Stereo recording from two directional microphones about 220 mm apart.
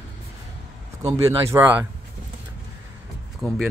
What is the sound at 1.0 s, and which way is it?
Speech, 15° right (ahead or behind).